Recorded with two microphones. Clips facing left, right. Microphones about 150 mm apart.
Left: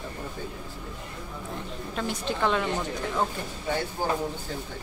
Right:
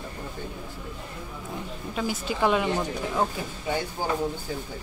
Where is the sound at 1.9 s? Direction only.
5° right (ahead or behind).